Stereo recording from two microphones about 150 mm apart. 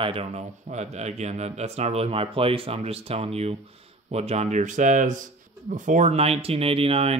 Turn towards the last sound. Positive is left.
turn(degrees=-40)  # may be behind; listen again after turning